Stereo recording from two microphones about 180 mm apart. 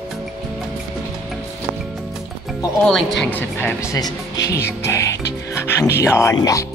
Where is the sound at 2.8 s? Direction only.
5° left (ahead or behind).